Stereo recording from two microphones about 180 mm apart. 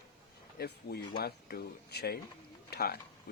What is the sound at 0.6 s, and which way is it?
Speech, 60° left (ahead or behind).